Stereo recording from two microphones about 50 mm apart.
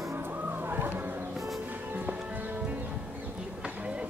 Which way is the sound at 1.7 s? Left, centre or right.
Right.